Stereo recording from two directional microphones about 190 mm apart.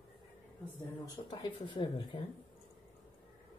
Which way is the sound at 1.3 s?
25° left (ahead or behind).